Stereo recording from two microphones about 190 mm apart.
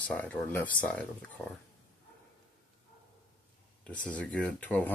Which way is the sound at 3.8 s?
5° left (ahead or behind).